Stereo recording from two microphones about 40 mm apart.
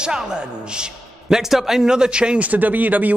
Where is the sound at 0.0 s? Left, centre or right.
Right.